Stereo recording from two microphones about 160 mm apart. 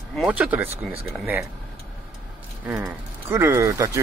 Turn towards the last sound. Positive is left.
turn(degrees=-20)  # may be behind; listen again after turning